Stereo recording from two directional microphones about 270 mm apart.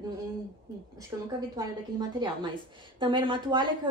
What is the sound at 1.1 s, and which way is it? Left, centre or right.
A woman's voice, centre.